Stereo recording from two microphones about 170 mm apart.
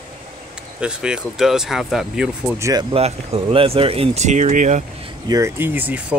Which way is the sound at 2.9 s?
35° right (ahead or behind).